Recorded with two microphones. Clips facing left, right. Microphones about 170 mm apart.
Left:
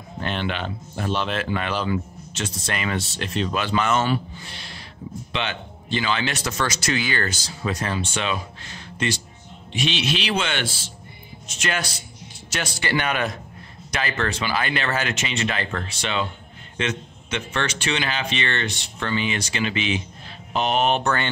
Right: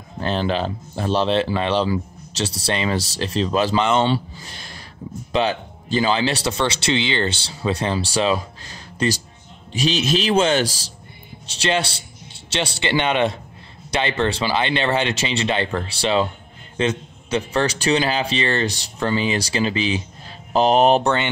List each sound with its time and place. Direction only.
0.2 s speech: 35° right (ahead or behind)
4.5 s a sound: 45° right (ahead or behind)
5.3 s speech: 35° right (ahead or behind)